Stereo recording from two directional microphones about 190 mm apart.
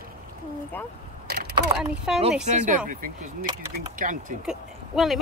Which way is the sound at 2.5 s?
40° right (ahead or behind).